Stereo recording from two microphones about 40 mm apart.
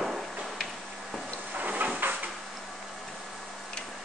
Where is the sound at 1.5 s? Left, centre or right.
Right.